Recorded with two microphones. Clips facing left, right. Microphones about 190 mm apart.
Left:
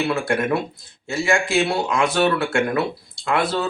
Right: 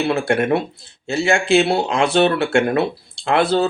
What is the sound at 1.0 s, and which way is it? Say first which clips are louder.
Speech: right 3 dB; 65° right (ahead or behind).